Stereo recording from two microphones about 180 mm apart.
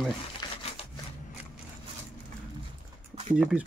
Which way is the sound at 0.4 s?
25° left (ahead or behind).